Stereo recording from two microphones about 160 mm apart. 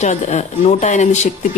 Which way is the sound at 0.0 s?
45° left (ahead or behind).